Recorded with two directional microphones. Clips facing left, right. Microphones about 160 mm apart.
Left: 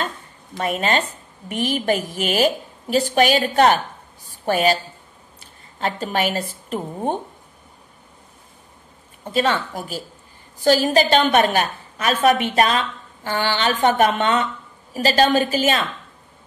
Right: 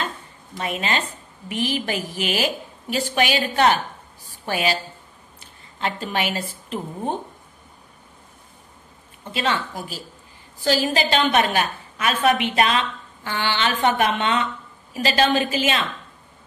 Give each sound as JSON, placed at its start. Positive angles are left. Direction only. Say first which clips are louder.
{"t": 0.6, "sound": "a woman's voice", "louder": "left 4 dB", "side_deg": 45}
{"t": 9.3, "sound": "a woman's voice", "louder": "left 4 dB", "side_deg": 45}